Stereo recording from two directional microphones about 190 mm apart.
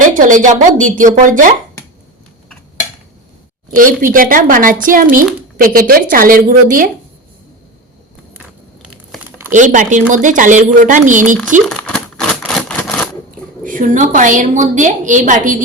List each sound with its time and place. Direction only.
0.1 s speech: 45° right (ahead or behind)
3.8 s speech: 45° right (ahead or behind)
9.5 s speech: 40° right (ahead or behind)
11.6 s a sound: 5° left (ahead or behind)
13.7 s speech: 45° right (ahead or behind)